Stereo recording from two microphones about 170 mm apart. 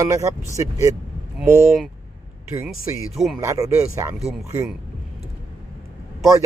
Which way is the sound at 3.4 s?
20° right (ahead or behind).